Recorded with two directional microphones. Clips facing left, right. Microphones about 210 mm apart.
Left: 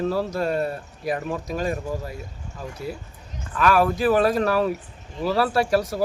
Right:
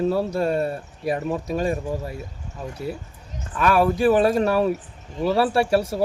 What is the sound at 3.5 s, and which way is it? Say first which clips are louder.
Speech: right 1 dB; 25° right (ahead or behind).